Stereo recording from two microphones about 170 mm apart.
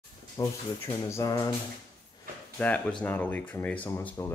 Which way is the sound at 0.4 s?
25° left (ahead or behind).